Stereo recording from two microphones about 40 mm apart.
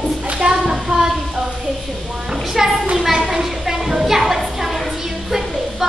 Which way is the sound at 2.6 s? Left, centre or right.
Centre.